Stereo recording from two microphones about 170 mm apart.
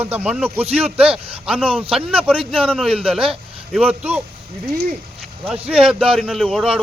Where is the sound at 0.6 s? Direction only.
35° right (ahead or behind).